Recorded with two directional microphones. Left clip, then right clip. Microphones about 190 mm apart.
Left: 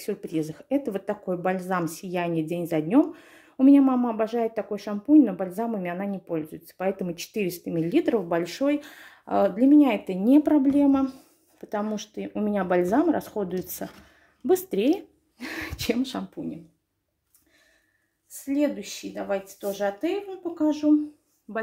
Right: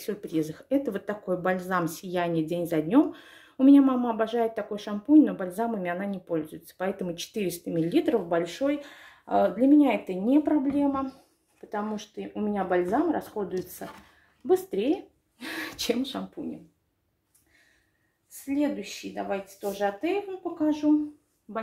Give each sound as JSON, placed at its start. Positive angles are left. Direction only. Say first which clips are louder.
{"t": 0.0, "sound": "speech", "louder": "left 1 dB", "side_deg": 20}
{"t": 8.6, "sound": "speech", "louder": "left 3 dB", "side_deg": 50}
{"t": 10.2, "sound": "speech", "louder": "left 5 dB", "side_deg": 60}
{"t": 15.3, "sound": "speech", "louder": "even", "side_deg": 30}
{"t": 18.4, "sound": "speech", "louder": "left 3 dB", "side_deg": 45}